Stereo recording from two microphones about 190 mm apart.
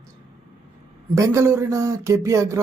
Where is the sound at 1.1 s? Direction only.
15° right (ahead or behind).